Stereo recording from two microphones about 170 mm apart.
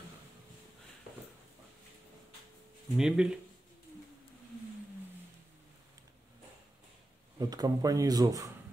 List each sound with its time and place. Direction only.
3.0 s speech: 5° right (ahead or behind)
7.3 s speech: 20° right (ahead or behind)